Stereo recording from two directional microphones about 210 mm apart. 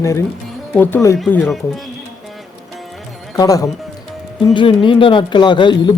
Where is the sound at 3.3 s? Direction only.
15° left (ahead or behind).